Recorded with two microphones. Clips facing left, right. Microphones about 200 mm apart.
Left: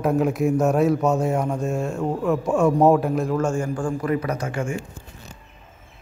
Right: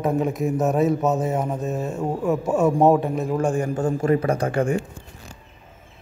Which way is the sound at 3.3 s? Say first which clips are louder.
Right 1 dB; 15° right (ahead or behind).